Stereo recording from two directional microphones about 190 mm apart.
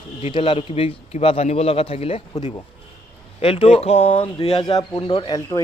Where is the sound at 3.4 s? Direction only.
30° left (ahead or behind).